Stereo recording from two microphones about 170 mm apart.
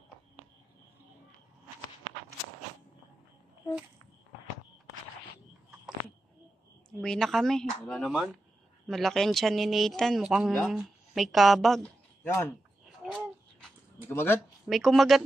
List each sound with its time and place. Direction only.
7.0 s a woman's voice: centre (ahead or behind)
12.2 s speech: 15° left (ahead or behind)
13.0 s a sound: 5° left (ahead or behind)
14.0 s speech: 15° left (ahead or behind)
14.7 s speech: centre (ahead or behind)